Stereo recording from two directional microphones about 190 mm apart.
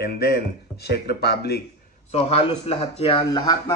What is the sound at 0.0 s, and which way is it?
Speech, 55° left (ahead or behind).